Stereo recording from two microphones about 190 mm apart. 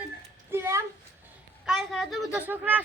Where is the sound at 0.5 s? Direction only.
15° right (ahead or behind).